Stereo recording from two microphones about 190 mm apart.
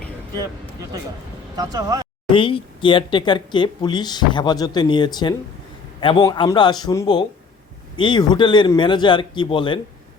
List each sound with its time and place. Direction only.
1.5 s speech: 20° right (ahead or behind)
2.3 s speech: 25° left (ahead or behind)